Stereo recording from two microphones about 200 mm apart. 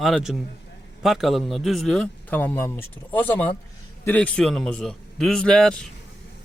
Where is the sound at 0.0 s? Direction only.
Centre (ahead or behind).